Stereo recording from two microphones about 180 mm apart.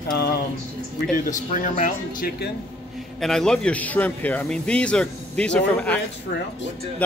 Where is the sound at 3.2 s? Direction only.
5° left (ahead or behind).